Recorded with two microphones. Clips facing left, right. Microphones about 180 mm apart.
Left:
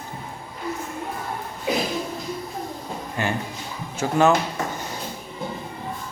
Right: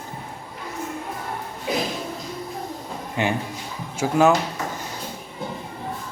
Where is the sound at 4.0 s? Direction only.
5° right (ahead or behind).